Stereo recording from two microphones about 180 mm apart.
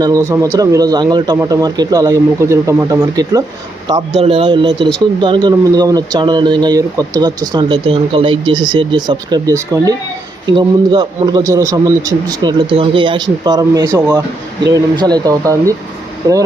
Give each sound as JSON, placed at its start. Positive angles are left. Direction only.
{"t": 0.0, "sound": "speech", "side_deg": -20}